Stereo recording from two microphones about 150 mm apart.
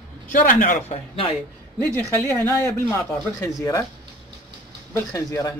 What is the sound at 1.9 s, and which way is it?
Speech, 15° left (ahead or behind).